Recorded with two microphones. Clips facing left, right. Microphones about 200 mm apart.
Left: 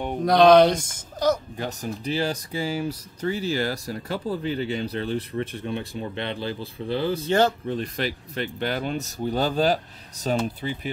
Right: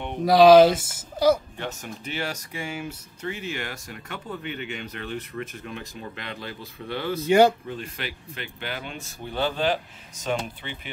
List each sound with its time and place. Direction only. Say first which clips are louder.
0.2 s speech: right 2 dB; 5° right (ahead or behind)
1.6 s speech: left 4 dB; 35° left (ahead or behind)
7.2 s speech: right 5 dB; 10° right (ahead or behind)
7.6 s speech: left 7 dB; 35° left (ahead or behind)